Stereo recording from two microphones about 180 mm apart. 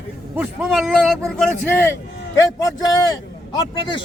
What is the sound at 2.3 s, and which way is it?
A man's voice, 20° left (ahead or behind).